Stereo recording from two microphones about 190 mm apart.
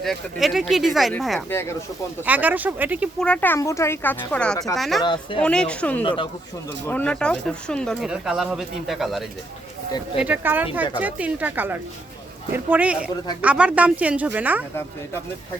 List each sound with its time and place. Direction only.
0.0 s speech: centre (ahead or behind)
1.5 s speech: 15° left (ahead or behind)
2.2 s speech: 10° right (ahead or behind)
3.2 s speech: 5° left (ahead or behind)
5.0 s speech: 25° left (ahead or behind)
5.4 s speech: 5° left (ahead or behind)
6.0 s speech: 25° left (ahead or behind)
6.8 s speech: 10° left (ahead or behind); by 14.6 s 10° right (ahead or behind)